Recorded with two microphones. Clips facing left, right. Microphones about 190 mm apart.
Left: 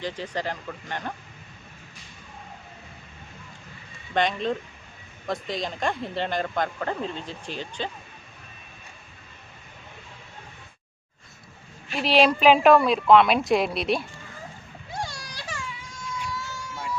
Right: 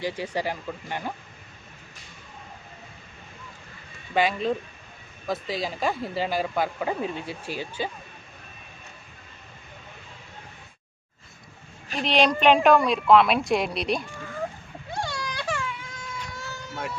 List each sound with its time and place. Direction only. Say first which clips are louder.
0.0 s speech: right 2 dB; 10° right (ahead or behind)
4.1 s a woman's voice: right 1 dB; 5° right (ahead or behind)
11.9 s a woman's voice: left 2 dB; 5° left (ahead or behind)
15.3 s baby cry: right 7 dB; 60° right (ahead or behind)